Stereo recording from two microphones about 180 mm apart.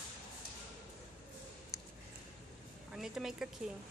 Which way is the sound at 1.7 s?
Centre (ahead or behind).